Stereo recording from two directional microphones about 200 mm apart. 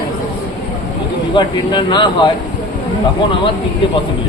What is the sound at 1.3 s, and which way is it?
Speech, 25° left (ahead or behind).